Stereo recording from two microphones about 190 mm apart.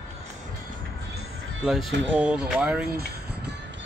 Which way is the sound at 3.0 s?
60° right (ahead or behind).